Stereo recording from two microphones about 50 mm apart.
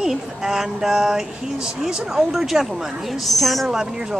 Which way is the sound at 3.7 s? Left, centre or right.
Centre.